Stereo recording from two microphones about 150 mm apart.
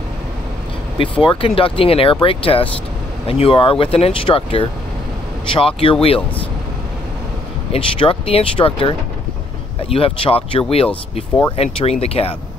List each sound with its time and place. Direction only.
0.9 s speech: 35° left (ahead or behind)
7.7 s speech: 40° left (ahead or behind)